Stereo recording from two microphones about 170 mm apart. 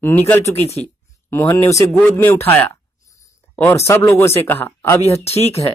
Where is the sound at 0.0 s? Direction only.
10° left (ahead or behind).